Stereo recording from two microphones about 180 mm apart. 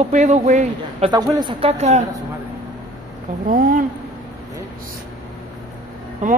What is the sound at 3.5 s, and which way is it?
Speech, 50° right (ahead or behind).